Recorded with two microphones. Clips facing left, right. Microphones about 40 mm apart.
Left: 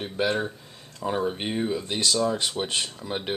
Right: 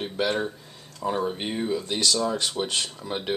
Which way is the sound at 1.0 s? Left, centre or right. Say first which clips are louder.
Even; centre.